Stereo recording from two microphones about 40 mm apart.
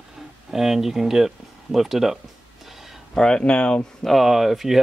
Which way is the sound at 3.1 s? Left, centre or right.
Centre.